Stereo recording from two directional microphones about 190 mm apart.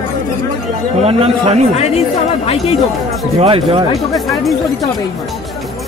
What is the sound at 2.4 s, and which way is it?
Speech, 30° left (ahead or behind).